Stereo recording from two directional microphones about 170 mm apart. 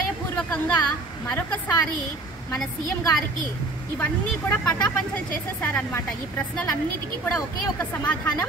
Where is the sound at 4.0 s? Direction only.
10° left (ahead or behind).